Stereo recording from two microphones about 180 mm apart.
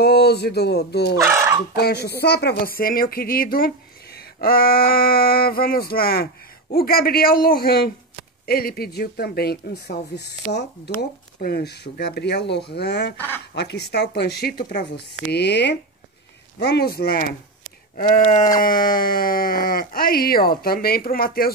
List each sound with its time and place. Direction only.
0.0 s speech: 65° left (ahead or behind)
1.2 s fowl: 15° right (ahead or behind)
1.8 s speech: 65° left (ahead or behind)